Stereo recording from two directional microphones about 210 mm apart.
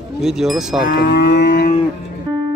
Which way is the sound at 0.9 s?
45° left (ahead or behind).